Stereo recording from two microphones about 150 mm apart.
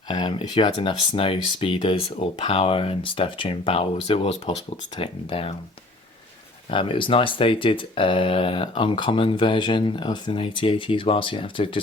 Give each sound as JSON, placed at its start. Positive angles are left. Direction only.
{"t": 0.1, "sound": "speech", "side_deg": 35}
{"t": 6.7, "sound": "speech", "side_deg": 35}